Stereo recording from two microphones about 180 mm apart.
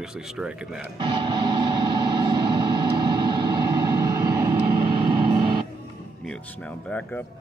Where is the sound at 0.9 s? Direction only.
25° right (ahead or behind).